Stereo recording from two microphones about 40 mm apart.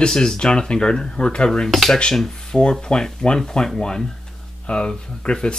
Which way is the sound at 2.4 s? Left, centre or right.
Centre.